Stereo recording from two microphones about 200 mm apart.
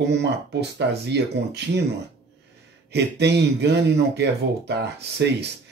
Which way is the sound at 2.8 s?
55° right (ahead or behind).